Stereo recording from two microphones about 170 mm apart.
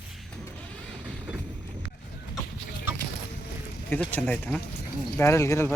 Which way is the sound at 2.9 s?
10° right (ahead or behind).